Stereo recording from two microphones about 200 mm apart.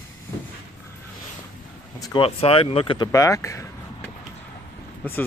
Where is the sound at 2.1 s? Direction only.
25° left (ahead or behind).